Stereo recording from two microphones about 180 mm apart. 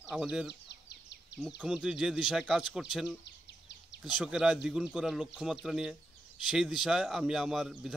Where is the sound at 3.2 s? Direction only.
70° left (ahead or behind).